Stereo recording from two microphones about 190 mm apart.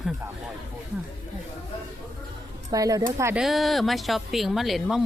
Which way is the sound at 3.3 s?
Centre (ahead or behind).